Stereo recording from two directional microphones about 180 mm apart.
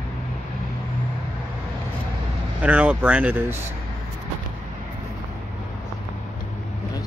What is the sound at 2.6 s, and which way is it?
Speech, 5° right (ahead or behind).